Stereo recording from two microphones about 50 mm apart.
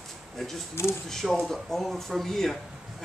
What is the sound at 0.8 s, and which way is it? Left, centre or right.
Speech, left.